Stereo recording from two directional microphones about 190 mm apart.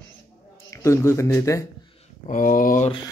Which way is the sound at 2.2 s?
45° left (ahead or behind).